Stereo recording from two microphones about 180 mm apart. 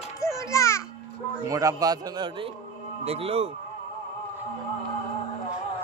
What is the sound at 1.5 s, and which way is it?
Speech, 20° right (ahead or behind).